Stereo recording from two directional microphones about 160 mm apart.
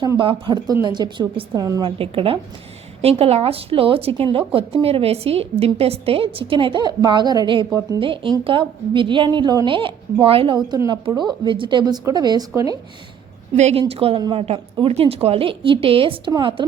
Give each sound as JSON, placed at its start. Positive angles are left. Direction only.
{"t": 0.0, "sound": "a woman's voice", "side_deg": -30}
{"t": 2.0, "sound": "a woman's voice", "side_deg": -35}
{"t": 13.6, "sound": "a woman's voice", "side_deg": -40}